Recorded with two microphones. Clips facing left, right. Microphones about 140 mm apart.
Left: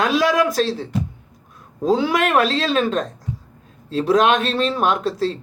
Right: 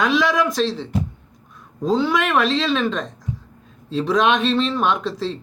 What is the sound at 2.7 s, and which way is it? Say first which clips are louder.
Speech: left 1 dB; 45° left (ahead or behind).